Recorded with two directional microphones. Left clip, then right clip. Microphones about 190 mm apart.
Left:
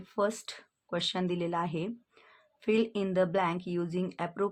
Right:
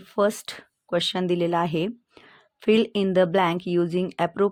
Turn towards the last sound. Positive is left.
turn(degrees=-45)  # may be behind; listen again after turning